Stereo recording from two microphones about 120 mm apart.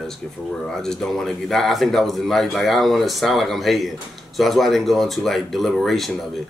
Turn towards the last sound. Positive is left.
turn(degrees=0)  # may be behind; listen again after turning